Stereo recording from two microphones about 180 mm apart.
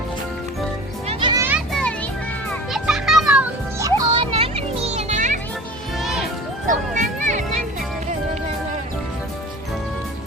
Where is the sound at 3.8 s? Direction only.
25° right (ahead or behind); by 5.4 s 40° right (ahead or behind).